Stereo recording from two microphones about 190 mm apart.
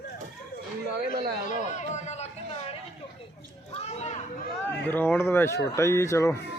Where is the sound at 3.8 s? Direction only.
35° left (ahead or behind).